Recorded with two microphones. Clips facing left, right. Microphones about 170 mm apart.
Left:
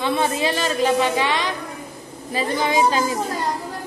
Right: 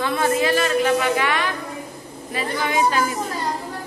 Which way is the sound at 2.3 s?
25° left (ahead or behind).